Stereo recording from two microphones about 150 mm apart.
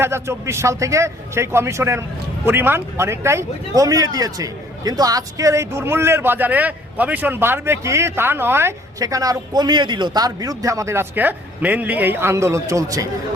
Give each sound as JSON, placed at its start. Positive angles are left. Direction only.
{"t": 0.0, "sound": "a man's voice", "side_deg": -20}